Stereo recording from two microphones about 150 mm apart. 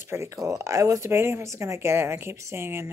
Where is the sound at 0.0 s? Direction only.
20° right (ahead or behind).